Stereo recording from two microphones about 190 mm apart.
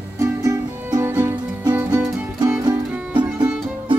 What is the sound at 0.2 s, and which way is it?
Music, 15° right (ahead or behind).